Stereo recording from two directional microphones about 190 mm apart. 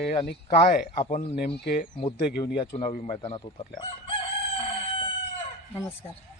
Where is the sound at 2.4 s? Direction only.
20° left (ahead or behind).